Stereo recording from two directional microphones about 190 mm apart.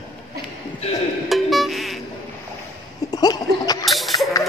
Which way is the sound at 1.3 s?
Centre (ahead or behind).